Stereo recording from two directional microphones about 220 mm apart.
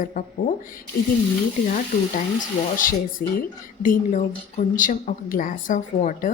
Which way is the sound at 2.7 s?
40° left (ahead or behind).